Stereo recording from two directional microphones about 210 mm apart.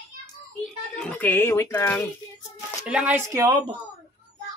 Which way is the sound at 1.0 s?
5° left (ahead or behind).